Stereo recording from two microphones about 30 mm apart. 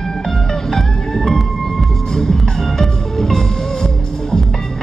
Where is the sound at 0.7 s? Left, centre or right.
Centre.